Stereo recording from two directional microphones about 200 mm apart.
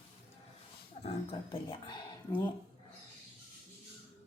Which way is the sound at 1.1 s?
25° left (ahead or behind).